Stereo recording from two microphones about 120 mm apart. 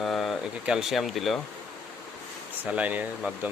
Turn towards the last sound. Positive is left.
turn(degrees=-15)  # may be behind; listen again after turning